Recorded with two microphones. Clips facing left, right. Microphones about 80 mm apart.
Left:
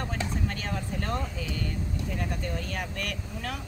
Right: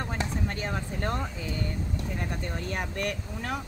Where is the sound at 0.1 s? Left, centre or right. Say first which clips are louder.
Right 1 dB; right.